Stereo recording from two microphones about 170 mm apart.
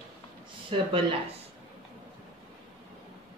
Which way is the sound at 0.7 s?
35° right (ahead or behind).